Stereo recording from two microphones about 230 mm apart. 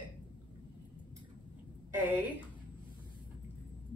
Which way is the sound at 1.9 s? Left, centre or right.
Centre.